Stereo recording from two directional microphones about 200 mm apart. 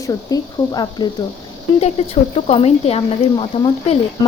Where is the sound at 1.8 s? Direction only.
30° left (ahead or behind).